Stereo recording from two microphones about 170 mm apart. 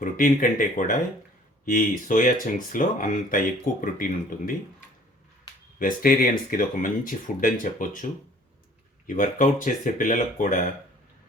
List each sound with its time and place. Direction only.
0.0 s speech: 50° left (ahead or behind)
5.8 s speech: 55° left (ahead or behind)
9.0 s speech: 50° left (ahead or behind)